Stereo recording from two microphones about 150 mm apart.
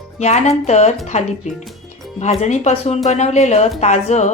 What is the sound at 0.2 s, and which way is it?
A woman's voice, 50° left (ahead or behind).